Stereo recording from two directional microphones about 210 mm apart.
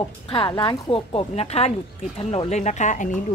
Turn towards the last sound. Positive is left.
turn(degrees=35)  # may be behind; listen again after turning